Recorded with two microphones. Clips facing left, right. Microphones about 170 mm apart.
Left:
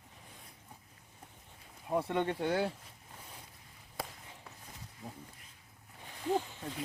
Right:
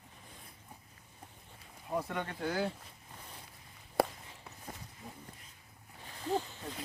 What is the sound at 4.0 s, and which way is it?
Walk, 70° right (ahead or behind).